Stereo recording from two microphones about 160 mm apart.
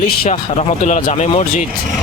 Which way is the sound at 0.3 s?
45° left (ahead or behind).